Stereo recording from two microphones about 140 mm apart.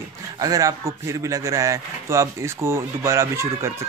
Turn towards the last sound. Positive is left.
turn(degrees=-20)  # may be behind; listen again after turning